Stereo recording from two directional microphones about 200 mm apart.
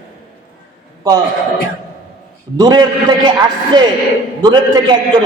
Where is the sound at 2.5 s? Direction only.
20° right (ahead or behind).